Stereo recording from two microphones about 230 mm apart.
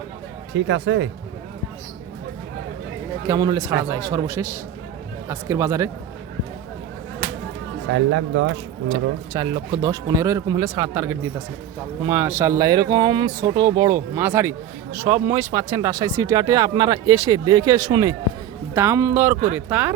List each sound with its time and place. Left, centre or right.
0.5 s speech: right
3.2 s speech: centre
7.9 s speech: right
9.3 s speech: centre